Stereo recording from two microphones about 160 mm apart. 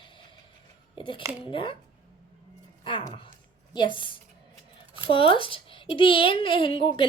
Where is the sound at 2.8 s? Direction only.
25° left (ahead or behind).